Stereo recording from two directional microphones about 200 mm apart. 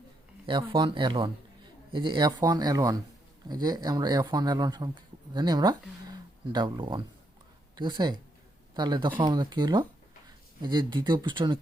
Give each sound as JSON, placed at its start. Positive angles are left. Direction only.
{"t": 0.4, "sound": "speech", "side_deg": -25}